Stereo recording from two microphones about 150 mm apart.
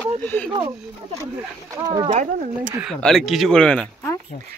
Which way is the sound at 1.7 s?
25° right (ahead or behind).